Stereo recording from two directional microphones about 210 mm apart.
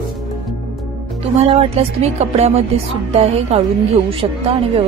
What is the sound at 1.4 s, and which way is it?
Speech, 30° right (ahead or behind).